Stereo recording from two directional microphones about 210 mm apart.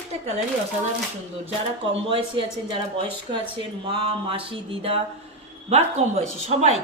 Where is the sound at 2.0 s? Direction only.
25° right (ahead or behind).